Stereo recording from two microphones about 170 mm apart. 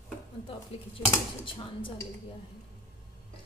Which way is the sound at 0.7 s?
35° left (ahead or behind).